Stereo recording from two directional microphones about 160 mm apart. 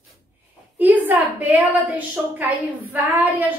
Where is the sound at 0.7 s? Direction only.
10° right (ahead or behind).